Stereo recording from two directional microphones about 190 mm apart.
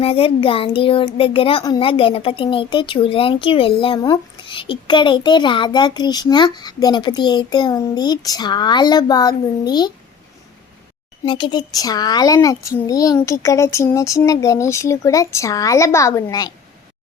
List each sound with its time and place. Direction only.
0.0 s a child's voice: 30° left (ahead or behind)
11.3 s a child's voice: 25° left (ahead or behind)